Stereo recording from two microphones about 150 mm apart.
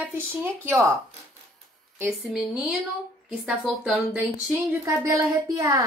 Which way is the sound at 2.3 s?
5° right (ahead or behind).